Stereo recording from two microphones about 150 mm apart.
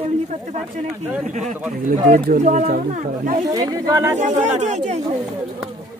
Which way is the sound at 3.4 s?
25° right (ahead or behind).